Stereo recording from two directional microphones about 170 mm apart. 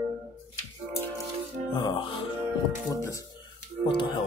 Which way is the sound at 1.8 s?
25° left (ahead or behind).